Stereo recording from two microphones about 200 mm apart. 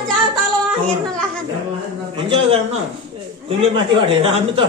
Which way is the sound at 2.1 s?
30° right (ahead or behind).